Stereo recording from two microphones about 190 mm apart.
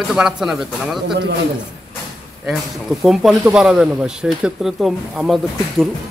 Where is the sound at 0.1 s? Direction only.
5° right (ahead or behind).